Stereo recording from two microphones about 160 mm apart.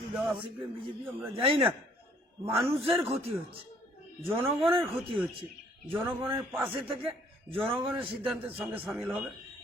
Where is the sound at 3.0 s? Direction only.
40° right (ahead or behind).